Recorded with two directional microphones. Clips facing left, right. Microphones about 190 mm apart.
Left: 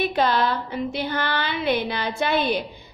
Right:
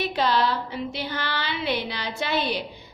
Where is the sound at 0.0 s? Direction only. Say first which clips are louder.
Left 2 dB; 50° left (ahead or behind).